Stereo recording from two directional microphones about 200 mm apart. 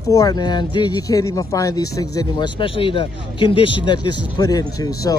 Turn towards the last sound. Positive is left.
turn(degrees=15)  # may be behind; listen again after turning